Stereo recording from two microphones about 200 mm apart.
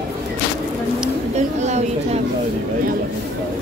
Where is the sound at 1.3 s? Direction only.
35° right (ahead or behind).